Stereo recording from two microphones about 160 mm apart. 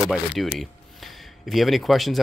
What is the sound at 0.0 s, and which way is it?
Speech, centre (ahead or behind).